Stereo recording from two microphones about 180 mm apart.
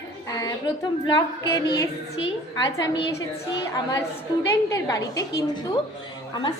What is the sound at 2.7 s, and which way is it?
Speech, 20° left (ahead or behind).